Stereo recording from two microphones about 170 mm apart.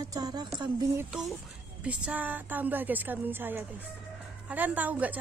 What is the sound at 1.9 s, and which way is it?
A woman's voice, 10° right (ahead or behind).